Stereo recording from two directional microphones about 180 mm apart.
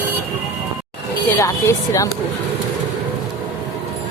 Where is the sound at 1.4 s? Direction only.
20° left (ahead or behind).